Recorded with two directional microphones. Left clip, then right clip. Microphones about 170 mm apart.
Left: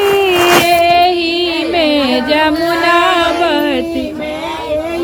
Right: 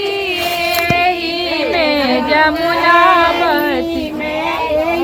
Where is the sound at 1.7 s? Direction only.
30° left (ahead or behind).